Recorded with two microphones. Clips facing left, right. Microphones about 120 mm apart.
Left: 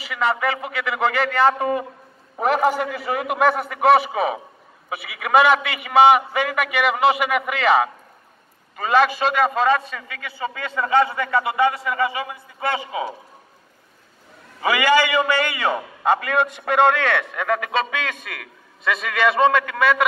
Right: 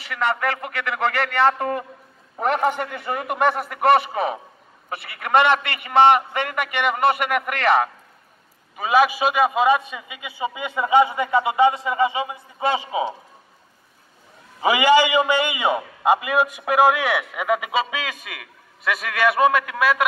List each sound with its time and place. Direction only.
0.0 s a man's voice: centre (ahead or behind); by 13.1 s 20° right (ahead or behind)
14.6 s a man's voice: 20° right (ahead or behind)